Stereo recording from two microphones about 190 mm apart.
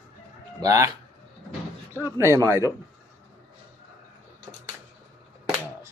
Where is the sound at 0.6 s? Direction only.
15° right (ahead or behind).